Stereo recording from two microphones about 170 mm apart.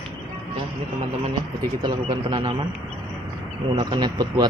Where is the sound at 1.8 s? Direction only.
25° right (ahead or behind).